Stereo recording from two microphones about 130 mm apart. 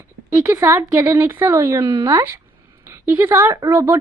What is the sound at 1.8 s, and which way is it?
Speech, 35° right (ahead or behind).